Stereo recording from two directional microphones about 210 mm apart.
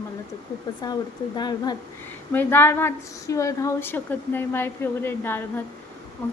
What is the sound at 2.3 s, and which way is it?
A woman's voice, 10° left (ahead or behind).